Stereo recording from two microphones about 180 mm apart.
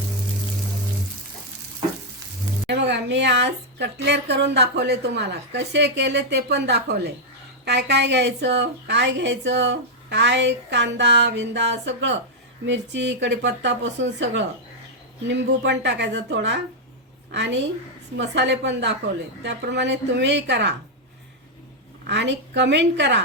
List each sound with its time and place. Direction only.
2.6 s a woman's voice: 70° right (ahead or behind)
22.0 s a woman's voice: 75° right (ahead or behind)